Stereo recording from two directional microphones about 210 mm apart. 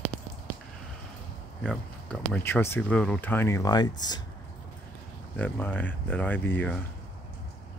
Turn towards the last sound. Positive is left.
turn(degrees=10)  # may be behind; listen again after turning